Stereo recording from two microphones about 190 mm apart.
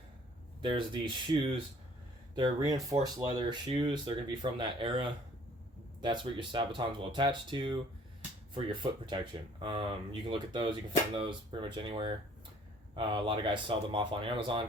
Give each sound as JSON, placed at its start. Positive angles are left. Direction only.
{"t": 0.6, "sound": "speech", "side_deg": -25}
{"t": 2.3, "sound": "speech", "side_deg": -20}